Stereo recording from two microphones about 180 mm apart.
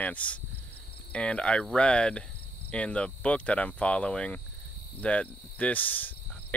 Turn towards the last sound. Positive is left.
turn(degrees=10)  # may be behind; listen again after turning